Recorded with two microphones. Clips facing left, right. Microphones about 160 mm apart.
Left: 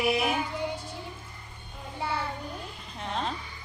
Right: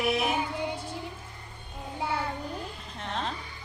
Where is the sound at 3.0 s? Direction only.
Centre (ahead or behind).